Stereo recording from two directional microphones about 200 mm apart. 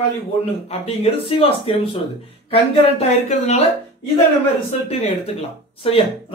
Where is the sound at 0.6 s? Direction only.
30° left (ahead or behind).